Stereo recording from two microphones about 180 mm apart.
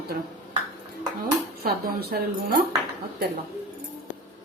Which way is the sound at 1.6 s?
60° right (ahead or behind).